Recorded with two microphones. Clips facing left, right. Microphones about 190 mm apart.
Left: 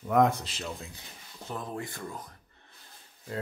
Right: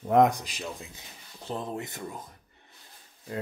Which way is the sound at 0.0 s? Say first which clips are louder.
Right 3 dB; 25° right (ahead or behind).